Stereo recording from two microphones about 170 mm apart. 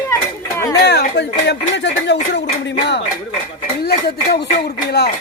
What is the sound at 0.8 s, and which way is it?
Speech, 80° left.